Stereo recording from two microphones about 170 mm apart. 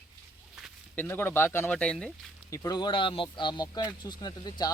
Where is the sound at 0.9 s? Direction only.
10° left (ahead or behind).